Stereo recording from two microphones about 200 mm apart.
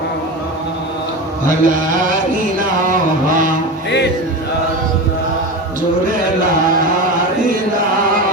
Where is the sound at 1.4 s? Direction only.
40° right (ahead or behind).